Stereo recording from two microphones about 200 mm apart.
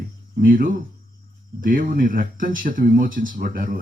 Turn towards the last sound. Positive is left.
turn(degrees=-45)  # may be behind; listen again after turning